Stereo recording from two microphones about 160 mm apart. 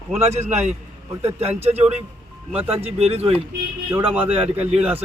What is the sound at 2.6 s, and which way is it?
Speech, 40° right (ahead or behind).